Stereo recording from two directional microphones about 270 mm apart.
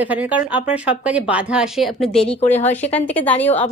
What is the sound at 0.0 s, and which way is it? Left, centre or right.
A woman's voice, centre.